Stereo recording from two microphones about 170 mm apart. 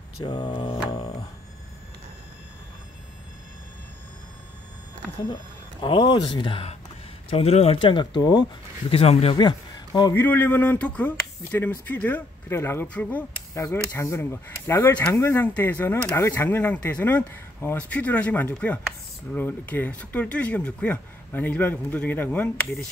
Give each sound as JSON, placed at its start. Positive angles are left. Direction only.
{"t": 0.2, "sound": "music", "side_deg": 25}
{"t": 5.3, "sound": "speech", "side_deg": 25}
{"t": 10.1, "sound": "speech", "side_deg": 10}